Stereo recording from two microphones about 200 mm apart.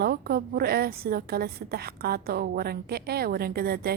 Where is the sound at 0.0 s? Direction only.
50° right (ahead or behind).